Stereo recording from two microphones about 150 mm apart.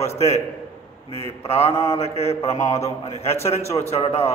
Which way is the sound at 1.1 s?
40° left (ahead or behind).